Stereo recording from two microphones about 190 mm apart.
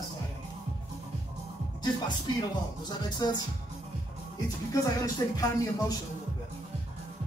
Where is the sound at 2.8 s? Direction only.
20° left (ahead or behind).